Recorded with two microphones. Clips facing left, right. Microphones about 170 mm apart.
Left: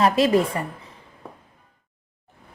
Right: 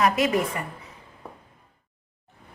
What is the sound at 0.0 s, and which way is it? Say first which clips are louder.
Speech: left 4 dB; 30° left (ahead or behind).